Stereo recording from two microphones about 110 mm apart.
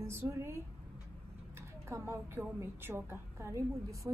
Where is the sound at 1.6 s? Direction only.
25° right (ahead or behind).